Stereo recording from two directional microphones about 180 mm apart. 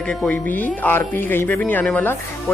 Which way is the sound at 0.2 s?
10° left (ahead or behind).